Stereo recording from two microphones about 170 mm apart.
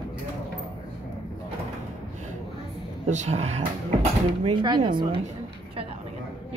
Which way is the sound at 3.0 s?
45° right (ahead or behind).